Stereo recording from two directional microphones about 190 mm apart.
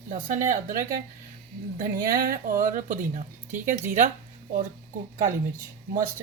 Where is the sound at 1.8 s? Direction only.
50° right (ahead or behind).